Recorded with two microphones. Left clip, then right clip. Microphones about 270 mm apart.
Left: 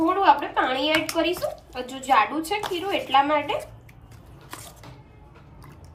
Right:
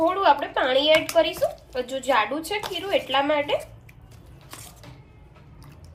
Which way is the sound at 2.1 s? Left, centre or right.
Centre.